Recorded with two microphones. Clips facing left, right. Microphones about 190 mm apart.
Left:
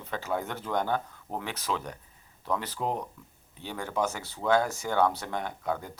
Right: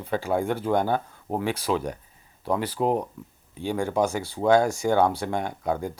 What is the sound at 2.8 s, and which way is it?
Speech, 25° right (ahead or behind).